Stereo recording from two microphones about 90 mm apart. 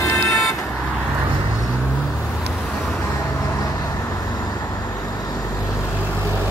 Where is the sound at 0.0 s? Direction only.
35° left (ahead or behind).